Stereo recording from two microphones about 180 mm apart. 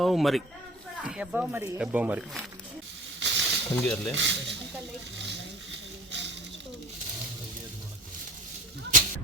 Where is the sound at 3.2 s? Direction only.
80° right.